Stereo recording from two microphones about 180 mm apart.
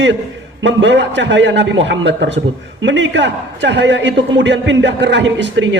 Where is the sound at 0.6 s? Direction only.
80° right.